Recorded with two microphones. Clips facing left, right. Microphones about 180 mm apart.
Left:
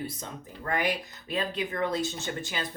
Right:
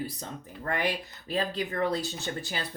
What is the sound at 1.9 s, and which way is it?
Speech, 35° right (ahead or behind).